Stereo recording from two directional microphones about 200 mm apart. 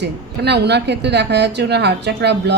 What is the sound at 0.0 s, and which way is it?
Speech, 60° right (ahead or behind).